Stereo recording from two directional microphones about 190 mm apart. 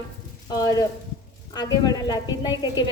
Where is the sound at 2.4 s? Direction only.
25° left (ahead or behind).